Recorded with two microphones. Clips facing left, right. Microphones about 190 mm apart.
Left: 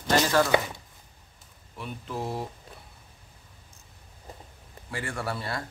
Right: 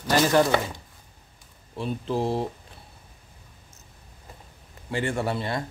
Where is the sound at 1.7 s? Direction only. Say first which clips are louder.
Right 8 dB; 30° right (ahead or behind).